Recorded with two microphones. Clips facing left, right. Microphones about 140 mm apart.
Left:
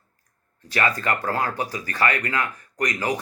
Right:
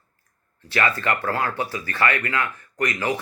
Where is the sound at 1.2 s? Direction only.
15° left (ahead or behind).